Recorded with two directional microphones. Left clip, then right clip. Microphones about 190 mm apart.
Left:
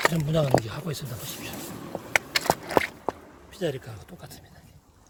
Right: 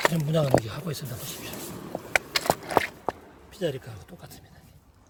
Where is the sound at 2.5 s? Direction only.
15° right (ahead or behind).